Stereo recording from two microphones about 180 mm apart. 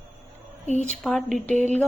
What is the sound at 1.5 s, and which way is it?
Speech, 40° right (ahead or behind).